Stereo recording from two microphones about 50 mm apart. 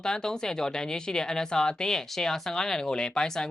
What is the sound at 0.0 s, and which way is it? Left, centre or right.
Speech, centre.